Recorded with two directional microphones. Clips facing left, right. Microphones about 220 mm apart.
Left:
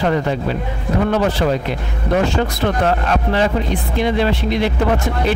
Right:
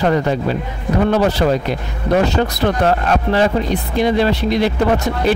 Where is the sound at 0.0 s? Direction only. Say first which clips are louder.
Right 2 dB; 40° right (ahead or behind).